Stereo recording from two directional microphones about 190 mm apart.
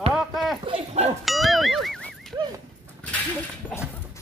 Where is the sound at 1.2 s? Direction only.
Centre (ahead or behind).